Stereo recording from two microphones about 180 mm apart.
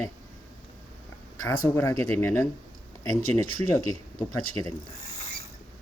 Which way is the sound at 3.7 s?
20° left (ahead or behind).